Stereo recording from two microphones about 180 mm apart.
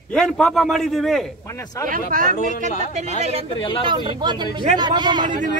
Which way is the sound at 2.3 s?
50° left (ahead or behind).